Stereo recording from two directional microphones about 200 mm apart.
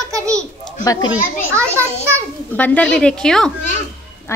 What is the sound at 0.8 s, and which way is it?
Speech, 15° left (ahead or behind).